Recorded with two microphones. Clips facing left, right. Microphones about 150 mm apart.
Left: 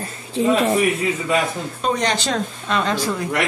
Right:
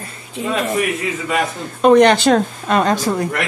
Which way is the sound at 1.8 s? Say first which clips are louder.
Right 12 dB; 65° right (ahead or behind).